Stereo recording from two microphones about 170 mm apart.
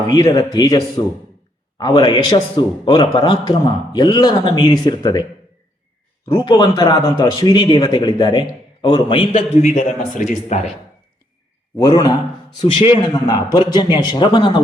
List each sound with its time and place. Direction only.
0.1 s a man's voice: 25° left (ahead or behind)
6.2 s a man's voice: 25° left (ahead or behind)
9.6 s speech: 45° left (ahead or behind)
11.8 s a man's voice: 25° left (ahead or behind)